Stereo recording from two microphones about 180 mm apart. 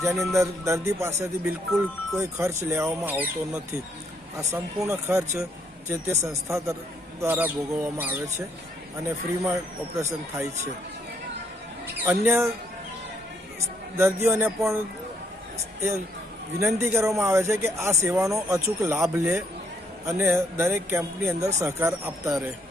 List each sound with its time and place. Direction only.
0.1 s music: centre (ahead or behind)
0.3 s speech: 15° right (ahead or behind)
12.0 s speech: 15° right (ahead or behind)
14.0 s speech: 10° right (ahead or behind)
16.6 s speech: 15° right (ahead or behind)